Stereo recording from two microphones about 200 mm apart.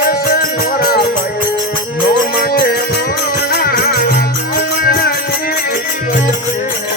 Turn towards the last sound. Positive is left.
turn(degrees=50)  # may be behind; listen again after turning